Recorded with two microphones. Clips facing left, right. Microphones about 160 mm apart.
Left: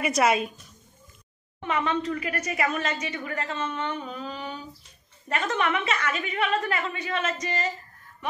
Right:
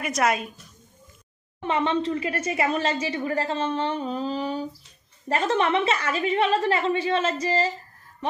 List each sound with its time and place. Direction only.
0.0 s a woman's voice: centre (ahead or behind)
1.6 s a woman's voice: 30° right (ahead or behind)